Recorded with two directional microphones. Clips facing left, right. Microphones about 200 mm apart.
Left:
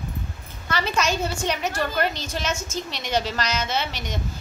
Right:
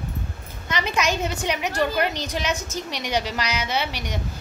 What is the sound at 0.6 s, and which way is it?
Speech, 15° right (ahead or behind).